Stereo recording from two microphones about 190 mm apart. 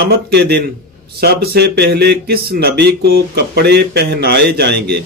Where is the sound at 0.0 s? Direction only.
60° right (ahead or behind).